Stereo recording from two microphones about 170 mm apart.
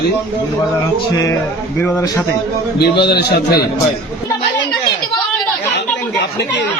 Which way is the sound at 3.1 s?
70° left (ahead or behind).